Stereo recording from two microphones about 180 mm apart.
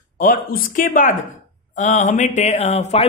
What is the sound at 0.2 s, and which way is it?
Speech, 50° left (ahead or behind).